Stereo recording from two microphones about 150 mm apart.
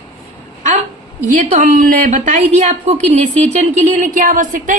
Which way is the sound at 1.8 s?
65° right (ahead or behind).